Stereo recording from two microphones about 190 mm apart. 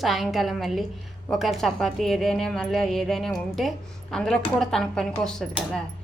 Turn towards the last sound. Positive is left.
turn(degrees=5)  # may be behind; listen again after turning